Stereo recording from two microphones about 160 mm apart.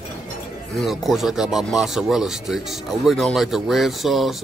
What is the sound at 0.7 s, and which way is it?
Speech, centre (ahead or behind).